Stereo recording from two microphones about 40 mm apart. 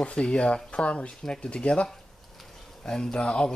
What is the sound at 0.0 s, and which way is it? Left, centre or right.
Speech, left.